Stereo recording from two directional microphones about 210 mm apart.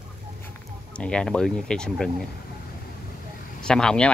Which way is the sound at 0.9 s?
5° left (ahead or behind).